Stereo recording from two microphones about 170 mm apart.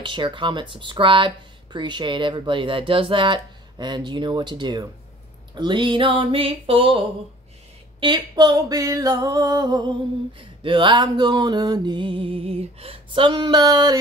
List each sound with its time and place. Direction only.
0.0 s speech: 30° right (ahead or behind)